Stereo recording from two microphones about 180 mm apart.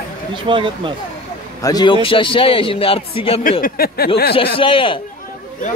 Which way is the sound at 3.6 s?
55° left (ahead or behind).